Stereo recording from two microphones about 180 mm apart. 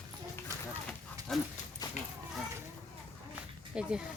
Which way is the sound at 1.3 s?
5° left (ahead or behind).